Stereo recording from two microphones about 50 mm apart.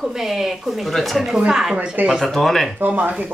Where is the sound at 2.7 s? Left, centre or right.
Right.